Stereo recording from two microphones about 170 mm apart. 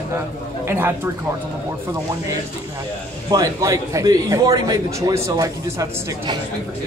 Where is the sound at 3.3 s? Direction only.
20° right (ahead or behind).